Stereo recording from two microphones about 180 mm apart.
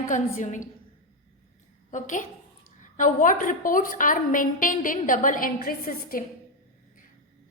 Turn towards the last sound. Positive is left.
turn(degrees=55)  # may be behind; listen again after turning